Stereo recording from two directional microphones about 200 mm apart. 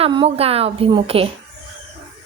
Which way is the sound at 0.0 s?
25° right (ahead or behind).